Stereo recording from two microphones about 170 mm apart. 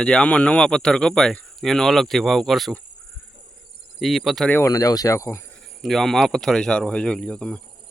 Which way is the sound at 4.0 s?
Centre (ahead or behind).